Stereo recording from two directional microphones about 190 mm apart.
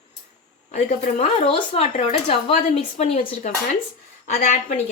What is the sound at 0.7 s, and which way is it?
Speech, 40° left (ahead or behind).